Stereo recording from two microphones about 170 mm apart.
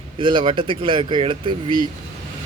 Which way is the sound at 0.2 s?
30° right (ahead or behind).